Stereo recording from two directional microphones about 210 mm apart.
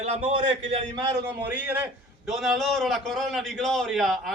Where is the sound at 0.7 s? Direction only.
20° right (ahead or behind).